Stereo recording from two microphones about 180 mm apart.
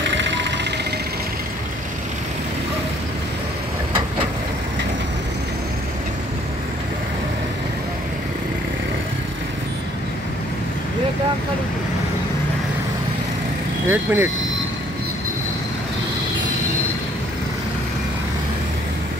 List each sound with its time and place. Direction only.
0.1 s vehicle: 90° right
13.8 s speech: 10° right (ahead or behind)